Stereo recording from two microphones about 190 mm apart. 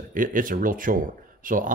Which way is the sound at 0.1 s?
45° right (ahead or behind).